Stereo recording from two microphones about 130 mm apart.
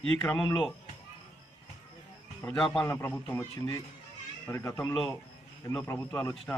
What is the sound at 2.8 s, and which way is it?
A man's voice, 15° left (ahead or behind).